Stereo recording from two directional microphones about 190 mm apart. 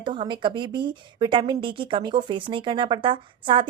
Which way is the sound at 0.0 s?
25° right (ahead or behind).